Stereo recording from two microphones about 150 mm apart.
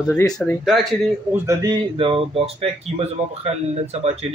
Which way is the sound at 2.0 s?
35° right (ahead or behind).